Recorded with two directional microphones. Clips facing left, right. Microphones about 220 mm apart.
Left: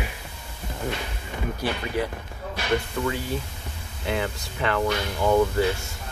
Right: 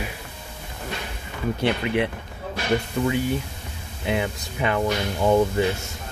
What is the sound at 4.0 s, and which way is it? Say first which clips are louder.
Speech: right 2 dB; 20° right (ahead or behind).